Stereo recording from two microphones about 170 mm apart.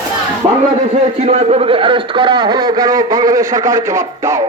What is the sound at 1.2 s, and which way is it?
A man's voice, 40° right (ahead or behind).